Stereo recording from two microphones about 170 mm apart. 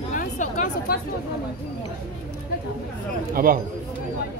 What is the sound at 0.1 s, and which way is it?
Chatter, 50° left (ahead or behind).